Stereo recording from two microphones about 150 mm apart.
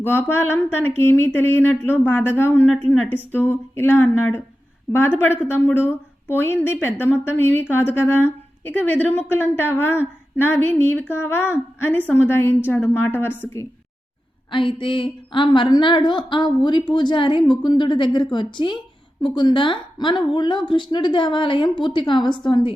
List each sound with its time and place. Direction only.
0.0 s a woman's voice: 15° left (ahead or behind)
14.5 s a woman's voice: 35° left (ahead or behind)